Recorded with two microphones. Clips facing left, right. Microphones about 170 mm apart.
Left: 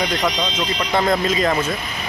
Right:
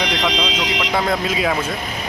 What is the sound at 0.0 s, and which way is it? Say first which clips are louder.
Speech: even; 80° right.